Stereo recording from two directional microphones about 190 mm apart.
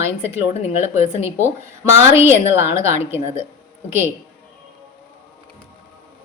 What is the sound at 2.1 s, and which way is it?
Speech, 15° right (ahead or behind).